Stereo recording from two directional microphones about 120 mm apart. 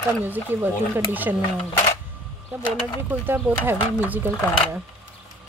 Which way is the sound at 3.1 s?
15° right (ahead or behind).